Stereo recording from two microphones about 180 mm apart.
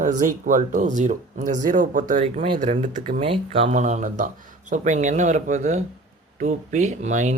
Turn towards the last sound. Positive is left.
turn(degrees=-40)  # may be behind; listen again after turning